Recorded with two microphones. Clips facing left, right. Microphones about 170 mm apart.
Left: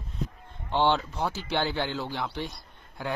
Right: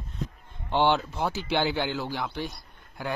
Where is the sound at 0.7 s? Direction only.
10° right (ahead or behind).